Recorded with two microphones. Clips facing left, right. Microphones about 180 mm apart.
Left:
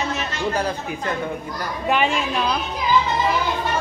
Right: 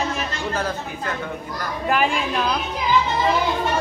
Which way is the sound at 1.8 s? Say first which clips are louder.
Even; 5° right (ahead or behind).